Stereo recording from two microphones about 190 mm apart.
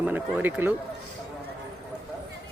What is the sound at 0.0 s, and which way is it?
Speech, 10° right (ahead or behind).